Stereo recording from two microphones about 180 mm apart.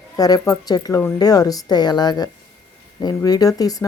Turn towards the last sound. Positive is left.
turn(degrees=20)  # may be behind; listen again after turning